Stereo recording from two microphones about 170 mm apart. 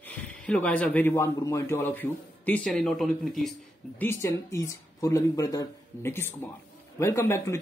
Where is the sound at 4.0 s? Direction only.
15° left (ahead or behind).